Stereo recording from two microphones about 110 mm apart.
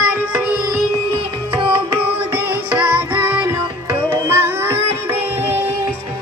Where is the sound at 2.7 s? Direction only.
10° right (ahead or behind).